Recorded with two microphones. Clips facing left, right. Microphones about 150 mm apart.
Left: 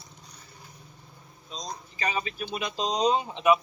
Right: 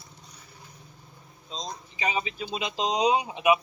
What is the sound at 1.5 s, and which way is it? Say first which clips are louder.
Speech: right 1 dB; 25° right (ahead or behind).